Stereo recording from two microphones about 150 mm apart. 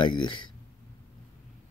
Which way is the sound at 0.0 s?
30° left (ahead or behind).